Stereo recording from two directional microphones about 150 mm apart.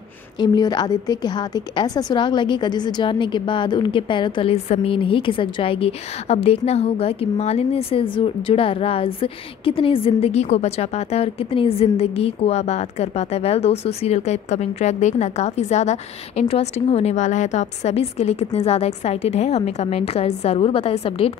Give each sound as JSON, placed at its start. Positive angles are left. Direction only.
{"t": 0.4, "sound": "a woman's voice", "side_deg": 30}